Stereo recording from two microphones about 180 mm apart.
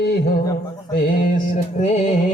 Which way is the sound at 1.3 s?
40° left (ahead or behind).